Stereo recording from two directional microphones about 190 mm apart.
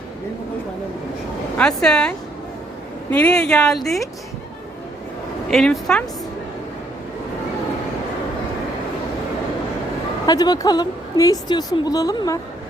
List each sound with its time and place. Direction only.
1.5 s speech: 5° left (ahead or behind)
5.5 s speech: centre (ahead or behind)
10.2 s a woman's voice: 20° left (ahead or behind)